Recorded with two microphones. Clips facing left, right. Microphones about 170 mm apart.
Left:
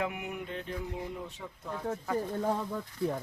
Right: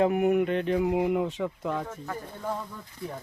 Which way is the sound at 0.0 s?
50° right (ahead or behind).